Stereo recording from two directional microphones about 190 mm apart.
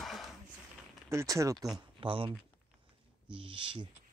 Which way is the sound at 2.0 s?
25° right (ahead or behind).